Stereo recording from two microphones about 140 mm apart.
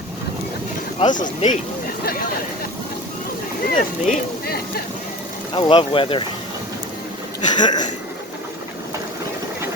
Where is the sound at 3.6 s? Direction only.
90° left.